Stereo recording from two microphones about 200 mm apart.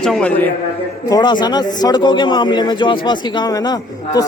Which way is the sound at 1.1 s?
20° left (ahead or behind).